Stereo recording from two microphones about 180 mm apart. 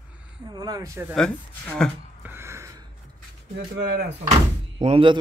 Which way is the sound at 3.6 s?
60° right (ahead or behind).